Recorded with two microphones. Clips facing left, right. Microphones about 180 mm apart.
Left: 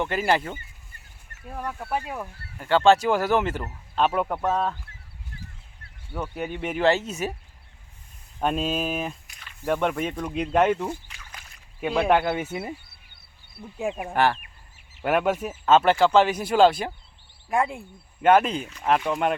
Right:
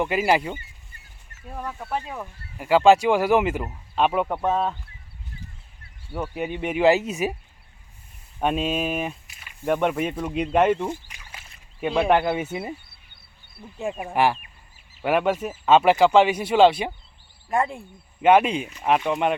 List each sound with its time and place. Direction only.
0.0 s speech: 5° right (ahead or behind)
1.5 s speech: 5° left (ahead or behind)
2.6 s speech: 5° right (ahead or behind)
6.1 s speech: 10° right (ahead or behind)
7.1 s speech: 15° right (ahead or behind)
8.4 s speech: 5° right (ahead or behind)
10.8 s a sound: 15° right (ahead or behind)
11.8 s speech: centre (ahead or behind)
14.0 s speech: 5° right (ahead or behind)